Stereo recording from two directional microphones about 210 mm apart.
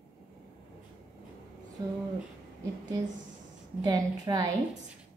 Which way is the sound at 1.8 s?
15° right (ahead or behind).